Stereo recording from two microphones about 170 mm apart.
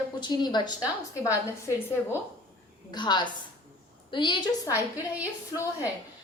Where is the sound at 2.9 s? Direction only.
25° left (ahead or behind).